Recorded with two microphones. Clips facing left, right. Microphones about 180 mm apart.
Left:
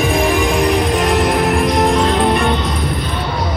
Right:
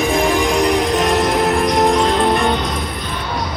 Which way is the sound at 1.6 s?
15° right (ahead or behind).